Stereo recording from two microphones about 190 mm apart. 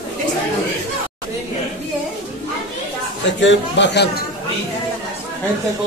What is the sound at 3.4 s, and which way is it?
Speech, 70° left (ahead or behind).